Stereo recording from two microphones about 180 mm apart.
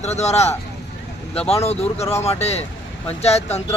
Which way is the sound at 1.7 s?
35° left (ahead or behind).